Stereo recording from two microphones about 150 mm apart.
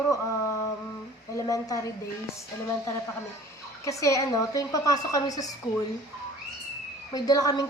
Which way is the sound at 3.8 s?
20° left (ahead or behind).